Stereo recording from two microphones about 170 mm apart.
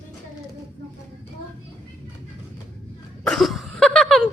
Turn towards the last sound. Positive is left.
turn(degrees=0)  # may be behind; listen again after turning